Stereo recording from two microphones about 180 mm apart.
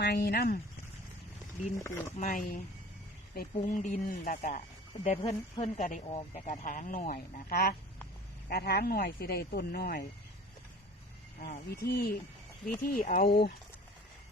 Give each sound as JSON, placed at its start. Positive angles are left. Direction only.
{"t": 0.0, "sound": "speech", "side_deg": 65}
{"t": 1.8, "sound": "speech", "side_deg": 15}
{"t": 2.2, "sound": "speech", "side_deg": 55}
{"t": 3.7, "sound": "speech", "side_deg": 45}
{"t": 11.3, "sound": "speech", "side_deg": 55}